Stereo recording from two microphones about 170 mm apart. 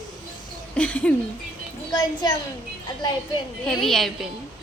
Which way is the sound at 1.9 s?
25° left (ahead or behind).